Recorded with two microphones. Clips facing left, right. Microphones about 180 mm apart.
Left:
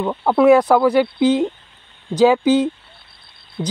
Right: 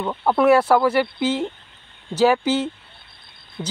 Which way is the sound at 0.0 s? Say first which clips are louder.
Left 4 dB; 10° left (ahead or behind).